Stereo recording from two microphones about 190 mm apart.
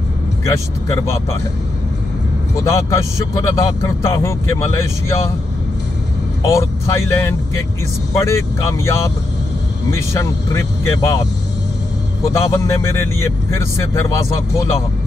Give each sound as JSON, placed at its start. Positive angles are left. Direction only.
{"t": 2.5, "sound": "speech", "side_deg": 15}
{"t": 6.4, "sound": "speech", "side_deg": 15}
{"t": 12.3, "sound": "speech", "side_deg": 15}